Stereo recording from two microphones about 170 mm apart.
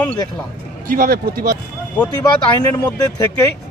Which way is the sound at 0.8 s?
60° right (ahead or behind).